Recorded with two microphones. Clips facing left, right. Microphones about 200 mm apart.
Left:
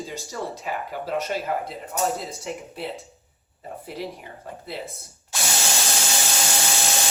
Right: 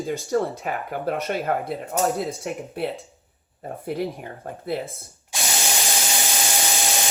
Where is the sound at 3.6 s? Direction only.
50° right (ahead or behind).